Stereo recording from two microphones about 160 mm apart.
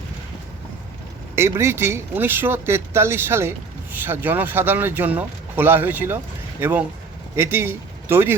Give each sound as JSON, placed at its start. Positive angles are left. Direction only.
{"t": 1.4, "sound": "speech", "side_deg": -15}